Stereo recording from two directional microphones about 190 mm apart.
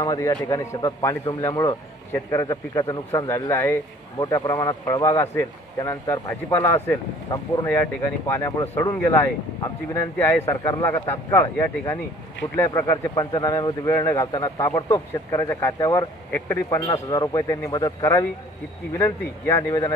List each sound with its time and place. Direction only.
0.0 s a man's voice: 20° left (ahead or behind)